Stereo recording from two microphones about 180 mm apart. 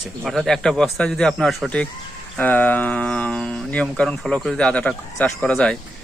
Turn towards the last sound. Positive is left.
turn(degrees=5)  # may be behind; listen again after turning